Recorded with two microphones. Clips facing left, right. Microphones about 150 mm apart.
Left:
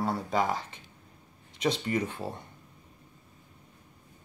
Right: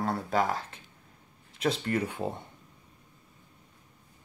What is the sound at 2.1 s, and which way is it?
Speech, 20° right (ahead or behind).